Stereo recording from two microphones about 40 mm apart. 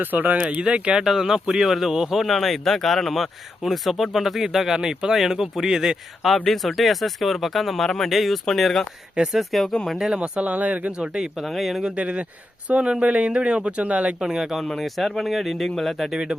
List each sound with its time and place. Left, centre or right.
0.0 s speech: right
0.6 s speech: right
1.0 s speech: centre
6.2 s speech: centre
8.1 s speech: centre
10.2 s speech: right
10.4 s speech: right
10.9 s speech: centre
11.4 s speech: centre
11.9 s speech: right
14.2 s speech: centre
14.6 s speech: centre